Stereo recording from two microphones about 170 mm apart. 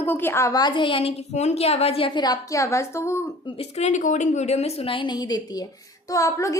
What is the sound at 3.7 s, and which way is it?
A woman's voice, 45° left (ahead or behind).